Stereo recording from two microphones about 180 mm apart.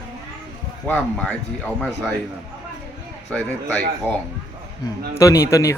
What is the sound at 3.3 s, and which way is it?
Speech, centre (ahead or behind).